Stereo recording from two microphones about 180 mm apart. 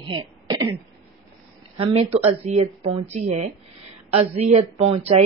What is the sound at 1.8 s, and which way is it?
A woman's voice, 35° right (ahead or behind).